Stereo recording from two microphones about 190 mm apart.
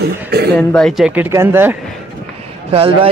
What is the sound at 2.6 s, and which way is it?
Speech, 30° right (ahead or behind).